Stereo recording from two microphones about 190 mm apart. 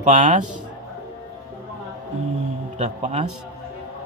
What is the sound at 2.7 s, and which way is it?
Speech, 35° right (ahead or behind).